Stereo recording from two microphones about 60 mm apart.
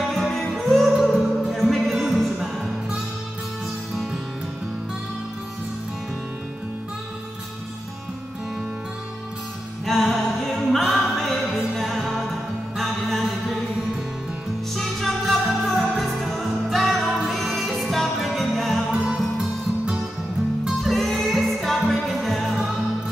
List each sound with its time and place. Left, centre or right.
0.5 s music: centre
9.8 s music: centre
14.7 s music: centre
18.9 s music: centre
20.8 s music: centre